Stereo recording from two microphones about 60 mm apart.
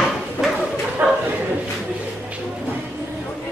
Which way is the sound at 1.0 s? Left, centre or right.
Right.